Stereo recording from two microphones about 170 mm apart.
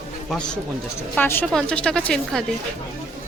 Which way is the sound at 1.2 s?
10° left (ahead or behind).